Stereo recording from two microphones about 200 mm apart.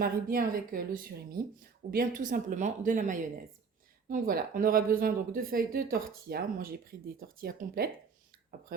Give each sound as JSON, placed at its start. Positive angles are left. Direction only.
{"t": 0.0, "sound": "a woman's voice", "side_deg": -45}